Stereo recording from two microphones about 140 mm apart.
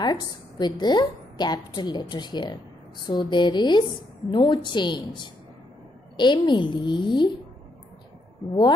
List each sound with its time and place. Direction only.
0.0 s a woman's voice: 30° left (ahead or behind)